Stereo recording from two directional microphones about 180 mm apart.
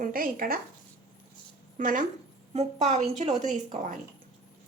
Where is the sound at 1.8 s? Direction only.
45° right (ahead or behind).